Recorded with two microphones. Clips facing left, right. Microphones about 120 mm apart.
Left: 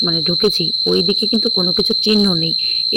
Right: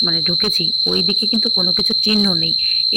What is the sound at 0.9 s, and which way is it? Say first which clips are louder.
Speech: left 5 dB; 20° left (ahead or behind).